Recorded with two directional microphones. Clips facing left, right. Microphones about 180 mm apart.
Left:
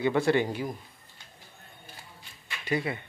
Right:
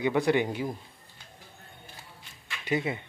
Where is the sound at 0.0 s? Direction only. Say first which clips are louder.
Even; 15° right (ahead or behind).